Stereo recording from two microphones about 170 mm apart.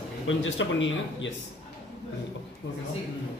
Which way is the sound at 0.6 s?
90° left.